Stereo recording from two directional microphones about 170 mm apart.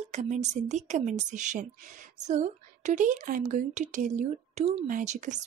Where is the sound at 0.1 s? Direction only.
45° right (ahead or behind).